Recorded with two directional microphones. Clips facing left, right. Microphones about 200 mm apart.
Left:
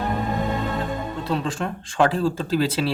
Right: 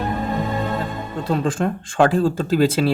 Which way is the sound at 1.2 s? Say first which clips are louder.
Right 7 dB; 50° right (ahead or behind).